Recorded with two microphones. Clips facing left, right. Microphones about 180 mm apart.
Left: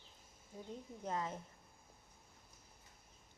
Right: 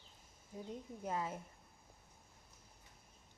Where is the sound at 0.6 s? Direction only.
10° right (ahead or behind).